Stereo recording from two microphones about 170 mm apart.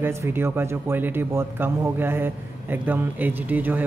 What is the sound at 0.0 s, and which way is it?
Speech, 15° right (ahead or behind).